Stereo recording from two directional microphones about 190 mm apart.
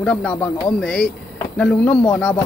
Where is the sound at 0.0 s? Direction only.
5° left (ahead or behind).